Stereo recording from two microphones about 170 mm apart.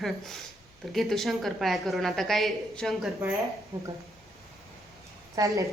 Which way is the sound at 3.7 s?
20° right (ahead or behind).